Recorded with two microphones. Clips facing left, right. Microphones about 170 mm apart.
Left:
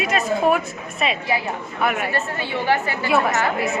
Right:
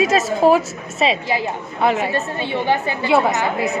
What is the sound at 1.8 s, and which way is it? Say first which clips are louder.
A woman's voice: right 4 dB; 25° right (ahead or behind).